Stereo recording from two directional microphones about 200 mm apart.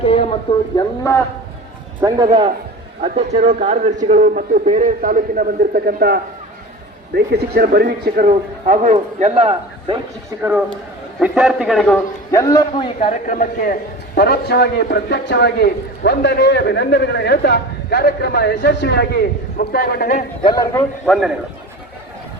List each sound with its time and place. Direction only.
0.0 s a sound: 30° left (ahead or behind)
0.8 s speech: 15° left (ahead or behind)
2.0 s a man's voice: 15° right (ahead or behind)
3.0 s a man's voice: 30° right (ahead or behind); by 6.1 s 50° right (ahead or behind)
7.3 s a man's voice: 50° right (ahead or behind); by 10.0 s 30° right (ahead or behind)
11.2 s a man's voice: 5° right (ahead or behind)
12.3 s a man's voice: 15° left (ahead or behind)
13.1 s a man's voice: 40° left (ahead or behind)
20.4 s a man's voice: 20° left (ahead or behind)
21.1 s a man's voice: centre (ahead or behind)